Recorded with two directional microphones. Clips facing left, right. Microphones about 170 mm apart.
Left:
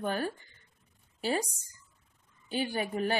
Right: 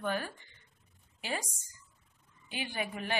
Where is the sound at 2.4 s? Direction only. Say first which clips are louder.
Left 6 dB; 35° left (ahead or behind).